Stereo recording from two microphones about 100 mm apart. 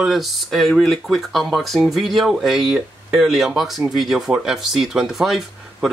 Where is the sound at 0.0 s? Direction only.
Centre (ahead or behind).